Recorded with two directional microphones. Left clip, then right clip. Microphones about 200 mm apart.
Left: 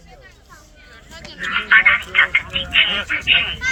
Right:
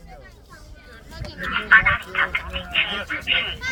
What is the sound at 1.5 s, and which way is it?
Speech, 25° right (ahead or behind).